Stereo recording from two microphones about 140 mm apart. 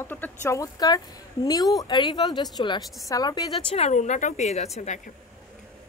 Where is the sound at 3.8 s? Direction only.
55° left (ahead or behind).